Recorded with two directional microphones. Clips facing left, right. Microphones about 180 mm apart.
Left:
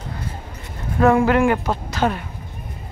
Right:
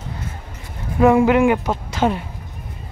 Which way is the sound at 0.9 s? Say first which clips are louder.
Right 2 dB; 10° right (ahead or behind).